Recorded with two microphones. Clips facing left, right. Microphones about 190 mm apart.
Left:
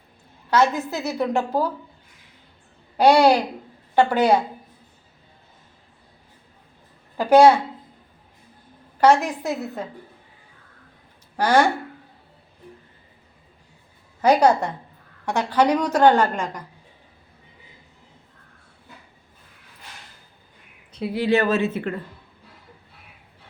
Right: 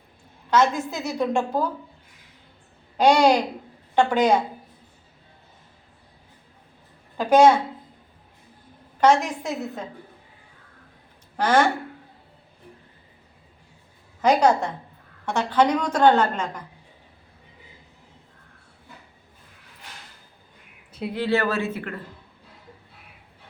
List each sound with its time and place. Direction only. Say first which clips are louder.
0.5 s a woman's voice: left 1 dB; 10° left (ahead or behind)
3.0 s a woman's voice: left 2 dB; 10° left (ahead or behind)
7.2 s a woman's voice: left 2 dB; 10° left (ahead or behind)
9.0 s a woman's voice: left 2 dB; 10° left (ahead or behind)
11.3 s a woman's voice: left 2 dB; 10° left (ahead or behind)
14.2 s a woman's voice: left 2 dB; 10° left (ahead or behind)
21.1 s speech: left 4 dB; 15° left (ahead or behind)